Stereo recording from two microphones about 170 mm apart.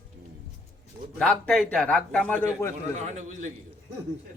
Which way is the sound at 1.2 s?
5° left (ahead or behind).